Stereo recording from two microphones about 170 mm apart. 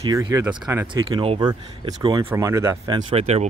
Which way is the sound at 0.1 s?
20° right (ahead or behind).